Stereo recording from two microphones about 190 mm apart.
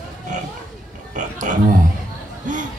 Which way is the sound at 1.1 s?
40° right (ahead or behind).